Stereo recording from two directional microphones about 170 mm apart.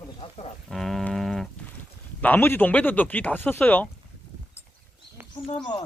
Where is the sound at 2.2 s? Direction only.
10° left (ahead or behind).